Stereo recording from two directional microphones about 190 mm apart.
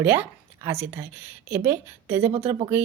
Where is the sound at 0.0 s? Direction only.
10° right (ahead or behind).